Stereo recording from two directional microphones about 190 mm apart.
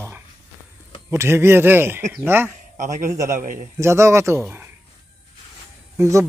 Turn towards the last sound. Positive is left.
turn(degrees=-15)  # may be behind; listen again after turning